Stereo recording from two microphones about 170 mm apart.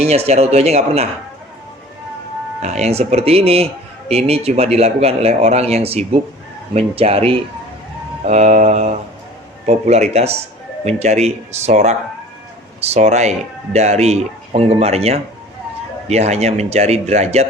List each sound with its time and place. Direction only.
0.0 s speech: 40° right (ahead or behind)
2.6 s speech: 40° right (ahead or behind)